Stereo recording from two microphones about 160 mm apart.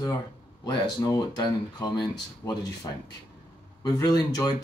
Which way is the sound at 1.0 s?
25° left (ahead or behind).